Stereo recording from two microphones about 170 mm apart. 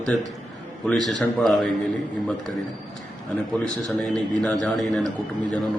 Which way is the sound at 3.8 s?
5° left (ahead or behind).